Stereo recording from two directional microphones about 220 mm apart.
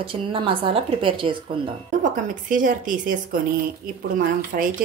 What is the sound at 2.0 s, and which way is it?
A woman's voice, 35° right (ahead or behind).